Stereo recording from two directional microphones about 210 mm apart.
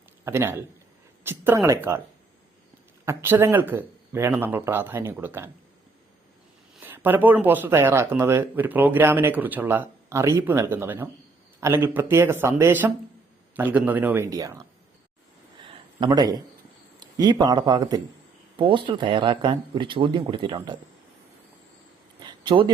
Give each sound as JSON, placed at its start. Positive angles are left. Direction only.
{"t": 0.3, "sound": "speech", "side_deg": -10}
{"t": 3.1, "sound": "speech", "side_deg": -10}
{"t": 6.7, "sound": "speech", "side_deg": -10}
{"t": 15.6, "sound": "a sound", "side_deg": -25}
{"t": 17.0, "sound": "a man's voice", "side_deg": -20}
{"t": 22.2, "sound": "a sound", "side_deg": -20}